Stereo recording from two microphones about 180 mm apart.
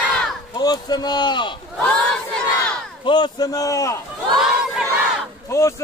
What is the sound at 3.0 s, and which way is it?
A man's voice, 25° left (ahead or behind).